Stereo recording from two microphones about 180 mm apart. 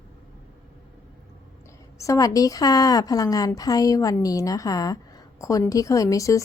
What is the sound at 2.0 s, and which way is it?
A woman's voice, 20° left (ahead or behind).